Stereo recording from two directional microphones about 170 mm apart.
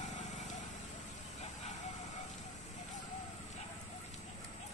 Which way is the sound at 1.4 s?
45° left (ahead or behind).